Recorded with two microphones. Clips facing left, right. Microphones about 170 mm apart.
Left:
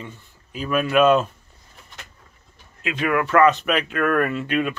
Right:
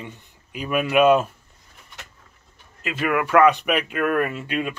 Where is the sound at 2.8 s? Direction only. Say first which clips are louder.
Left 1 dB; 5° right (ahead or behind).